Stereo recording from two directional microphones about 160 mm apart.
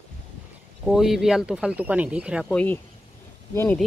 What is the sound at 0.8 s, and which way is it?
Speech, 5° right (ahead or behind).